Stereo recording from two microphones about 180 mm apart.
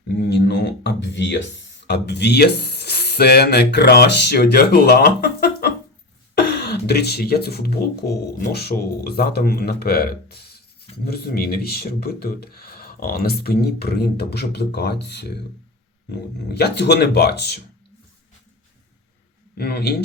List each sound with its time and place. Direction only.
0.3 s speech: 70° left (ahead or behind)
6.3 s throat clearing: 65° left (ahead or behind)
7.8 s speech: 60° left (ahead or behind)
19.5 s speech: 65° left (ahead or behind)